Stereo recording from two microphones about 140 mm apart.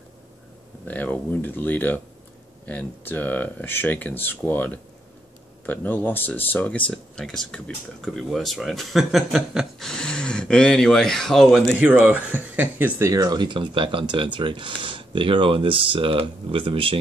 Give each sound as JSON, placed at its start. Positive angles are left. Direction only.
{"t": 0.8, "sound": "speech", "side_deg": 10}
{"t": 11.8, "sound": "speech", "side_deg": -15}
{"t": 13.1, "sound": "speech", "side_deg": -25}